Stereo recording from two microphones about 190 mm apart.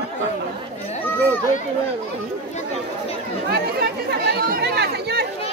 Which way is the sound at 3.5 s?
55° right (ahead or behind).